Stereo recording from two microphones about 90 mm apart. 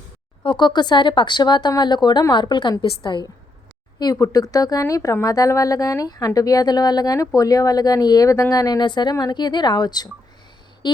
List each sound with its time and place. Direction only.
0.4 s speech: 55° left (ahead or behind)
4.0 s a woman's voice: 40° left (ahead or behind)
10.8 s a sound: 55° left (ahead or behind)